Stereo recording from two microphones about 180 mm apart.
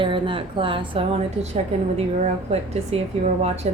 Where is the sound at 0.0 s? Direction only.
30° right (ahead or behind).